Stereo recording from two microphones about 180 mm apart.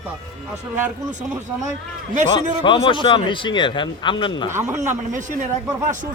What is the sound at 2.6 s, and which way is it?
Speech, 25° left (ahead or behind).